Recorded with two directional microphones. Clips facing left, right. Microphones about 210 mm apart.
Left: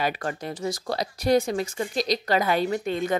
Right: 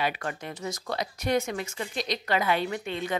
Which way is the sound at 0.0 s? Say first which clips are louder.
Left 3 dB; 40° left (ahead or behind).